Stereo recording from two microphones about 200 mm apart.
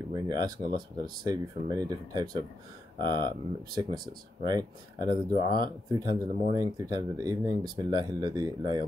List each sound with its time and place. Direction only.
0.1 s speech: 20° right (ahead or behind)